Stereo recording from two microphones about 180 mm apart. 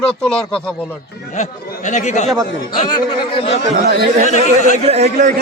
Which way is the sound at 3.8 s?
55° right (ahead or behind).